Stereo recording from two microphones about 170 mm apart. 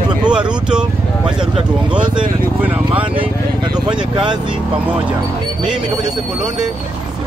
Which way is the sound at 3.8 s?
25° right (ahead or behind).